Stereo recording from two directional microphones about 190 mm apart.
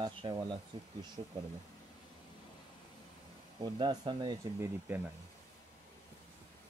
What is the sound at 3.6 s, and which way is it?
Speech, 25° right (ahead or behind).